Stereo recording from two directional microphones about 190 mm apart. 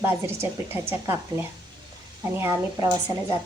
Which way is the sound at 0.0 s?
10° right (ahead or behind).